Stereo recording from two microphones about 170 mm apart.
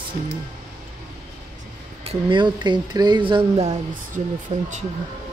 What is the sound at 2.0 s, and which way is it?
Speech, 30° right (ahead or behind).